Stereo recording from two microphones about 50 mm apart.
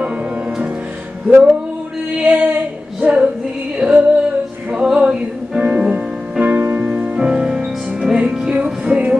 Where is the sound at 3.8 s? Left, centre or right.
Centre.